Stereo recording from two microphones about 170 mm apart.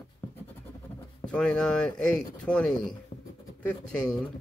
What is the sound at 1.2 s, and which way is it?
Speech, 5° left (ahead or behind).